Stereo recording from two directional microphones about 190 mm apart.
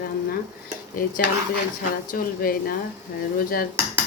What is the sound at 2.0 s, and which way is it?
Speech, 50° left (ahead or behind).